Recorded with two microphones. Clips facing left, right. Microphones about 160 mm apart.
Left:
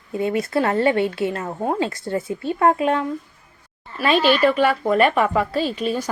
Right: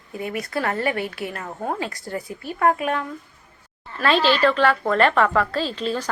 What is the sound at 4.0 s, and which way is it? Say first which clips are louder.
A woman's voice: left 2 dB; 15° left (ahead or behind).